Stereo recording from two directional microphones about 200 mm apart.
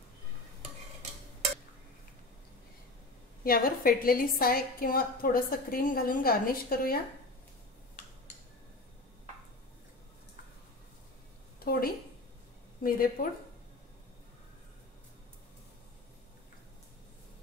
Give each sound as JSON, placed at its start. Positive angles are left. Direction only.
{"t": 3.4, "sound": "a woman's voice", "side_deg": 45}
{"t": 11.6, "sound": "a sound", "side_deg": 50}
{"t": 12.8, "sound": "a woman's voice", "side_deg": 45}